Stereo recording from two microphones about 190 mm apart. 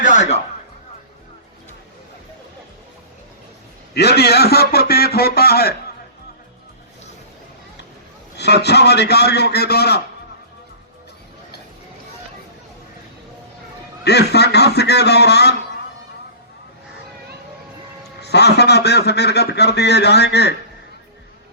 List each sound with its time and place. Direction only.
0.0 s a sound: 40° left (ahead or behind)
3.9 s a man's voice: 60° left (ahead or behind)
8.4 s a man's voice: 60° left (ahead or behind)
14.0 s a man's voice: 60° left (ahead or behind)
18.2 s a man's voice: 60° left (ahead or behind)